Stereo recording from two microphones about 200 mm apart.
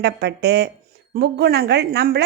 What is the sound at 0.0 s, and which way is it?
A woman's voice, 55° right (ahead or behind).